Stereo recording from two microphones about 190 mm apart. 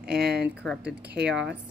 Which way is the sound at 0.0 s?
55° right (ahead or behind).